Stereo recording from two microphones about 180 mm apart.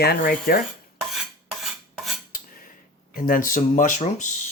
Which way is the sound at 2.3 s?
55° left (ahead or behind).